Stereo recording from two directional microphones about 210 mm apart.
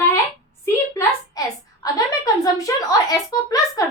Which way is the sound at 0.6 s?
15° left (ahead or behind).